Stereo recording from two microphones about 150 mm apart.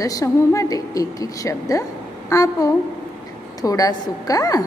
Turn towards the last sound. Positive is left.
turn(degrees=25)  # may be behind; listen again after turning